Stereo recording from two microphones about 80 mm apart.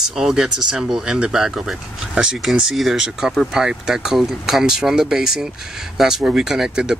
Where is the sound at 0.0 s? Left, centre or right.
Centre.